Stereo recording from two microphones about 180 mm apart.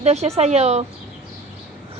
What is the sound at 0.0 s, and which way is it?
Speech, 35° right (ahead or behind).